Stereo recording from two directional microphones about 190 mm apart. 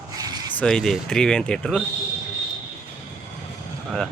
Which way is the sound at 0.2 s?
20° right (ahead or behind).